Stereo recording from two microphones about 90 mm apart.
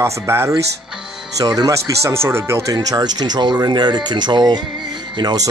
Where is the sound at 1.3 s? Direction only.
45° right (ahead or behind).